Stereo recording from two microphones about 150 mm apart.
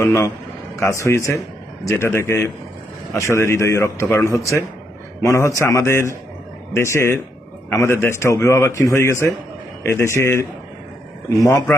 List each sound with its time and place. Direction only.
0.0 s speech: 15° left (ahead or behind)